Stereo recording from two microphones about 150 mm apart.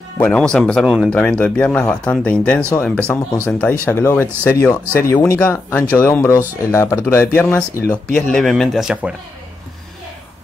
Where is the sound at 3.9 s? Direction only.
15° left (ahead or behind).